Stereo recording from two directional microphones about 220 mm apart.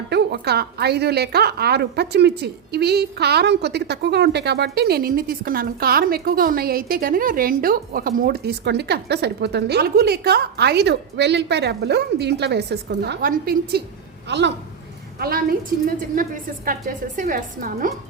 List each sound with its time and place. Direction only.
0.1 s a woman's voice: 50° right (ahead or behind)
15.2 s a woman's voice: 40° right (ahead or behind)
16.6 s a woman's voice: 40° right (ahead or behind)